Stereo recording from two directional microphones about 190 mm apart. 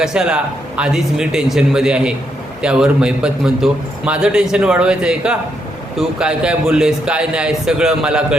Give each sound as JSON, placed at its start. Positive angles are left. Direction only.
{"t": 0.0, "sound": "a man's voice", "side_deg": -5}